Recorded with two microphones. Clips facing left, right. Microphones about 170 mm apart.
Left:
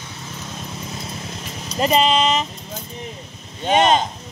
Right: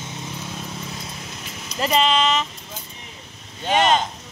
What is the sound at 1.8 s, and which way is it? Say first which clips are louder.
Speech: left 3 dB; 20° left (ahead or behind).